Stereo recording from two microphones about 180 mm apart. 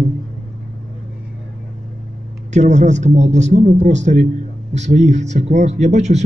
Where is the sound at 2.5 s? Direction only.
40° right (ahead or behind).